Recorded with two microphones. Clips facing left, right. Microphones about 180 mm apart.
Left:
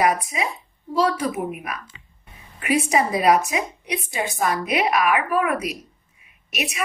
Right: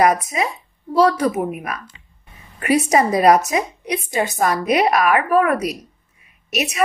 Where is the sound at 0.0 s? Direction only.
45° right (ahead or behind).